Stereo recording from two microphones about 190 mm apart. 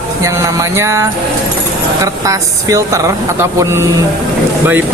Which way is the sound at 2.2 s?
15° right (ahead or behind).